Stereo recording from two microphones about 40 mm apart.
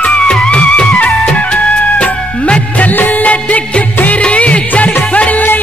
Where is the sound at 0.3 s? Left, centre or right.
Left.